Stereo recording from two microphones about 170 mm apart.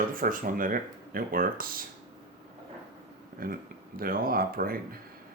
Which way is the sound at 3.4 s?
60° right (ahead or behind).